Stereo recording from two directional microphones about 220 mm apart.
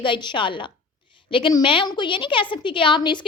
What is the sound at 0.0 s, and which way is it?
A woman's voice, 20° left (ahead or behind).